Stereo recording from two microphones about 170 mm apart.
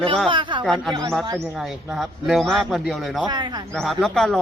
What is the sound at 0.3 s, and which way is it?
Speech, 30° right (ahead or behind).